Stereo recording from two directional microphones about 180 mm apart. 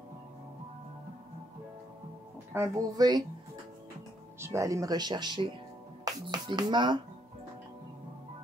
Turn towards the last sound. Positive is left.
turn(degrees=-25)  # may be behind; listen again after turning